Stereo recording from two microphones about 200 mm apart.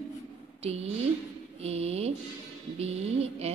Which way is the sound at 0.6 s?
30° right (ahead or behind).